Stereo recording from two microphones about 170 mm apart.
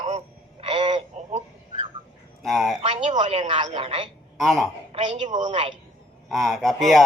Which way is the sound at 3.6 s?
35° right (ahead or behind).